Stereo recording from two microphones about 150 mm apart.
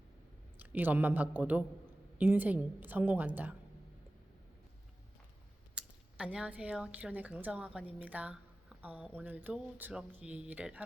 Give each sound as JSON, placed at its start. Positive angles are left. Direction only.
{"t": 0.6, "sound": "speech", "side_deg": -10}
{"t": 5.7, "sound": "speech", "side_deg": -5}